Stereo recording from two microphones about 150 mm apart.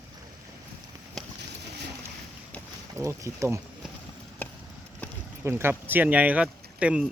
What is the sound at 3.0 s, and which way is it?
Speech, 20° right (ahead or behind).